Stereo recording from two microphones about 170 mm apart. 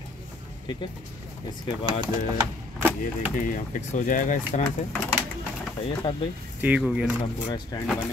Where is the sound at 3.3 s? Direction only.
50° left (ahead or behind).